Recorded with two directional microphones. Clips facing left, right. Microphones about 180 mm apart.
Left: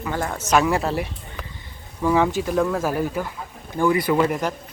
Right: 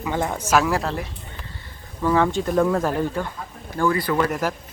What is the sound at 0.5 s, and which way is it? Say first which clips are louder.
Speech: left 2 dB; centre (ahead or behind).